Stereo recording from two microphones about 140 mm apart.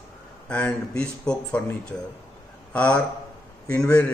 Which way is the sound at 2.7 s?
10° left (ahead or behind).